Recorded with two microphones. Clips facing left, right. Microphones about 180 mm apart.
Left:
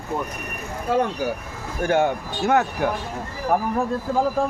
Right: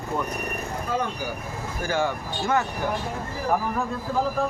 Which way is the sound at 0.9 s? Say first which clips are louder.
Left 8 dB; 70° left (ahead or behind).